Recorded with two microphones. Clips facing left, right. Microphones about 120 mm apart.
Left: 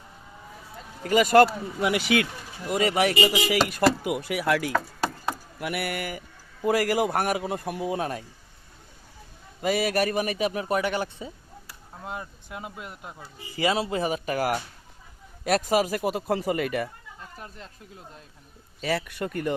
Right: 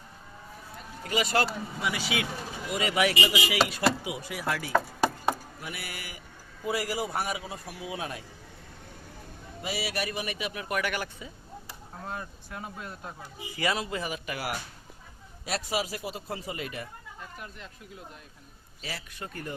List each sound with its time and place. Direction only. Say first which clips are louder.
1.0 s speech: left 10 dB; 50° left (ahead or behind)
1.8 s a man's voice: left 8 dB; 60° left (ahead or behind)
2.6 s speech: left 4 dB; 45° left (ahead or behind)
4.0 s a man's voice: left 7 dB; 60° left (ahead or behind)
9.6 s a man's voice: left 9 dB; 50° left (ahead or behind); by 13.1 s 15° left (ahead or behind)
13.6 s a man's voice: left 6 dB; 30° left (ahead or behind); by 16.9 s 65° left (ahead or behind)
17.3 s speech: left 3 dB; 35° left (ahead or behind)
18.9 s a man's voice: left 12 dB; 65° left (ahead or behind)